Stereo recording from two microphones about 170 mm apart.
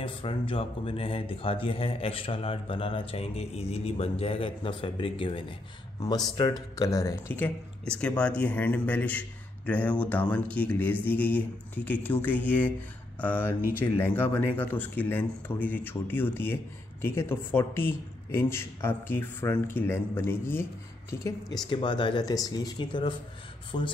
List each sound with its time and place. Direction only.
0.0 s speech: 30° left (ahead or behind)
21.6 s speech: 30° left (ahead or behind)